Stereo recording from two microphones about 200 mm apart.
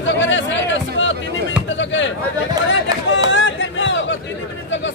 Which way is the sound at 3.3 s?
70° left (ahead or behind).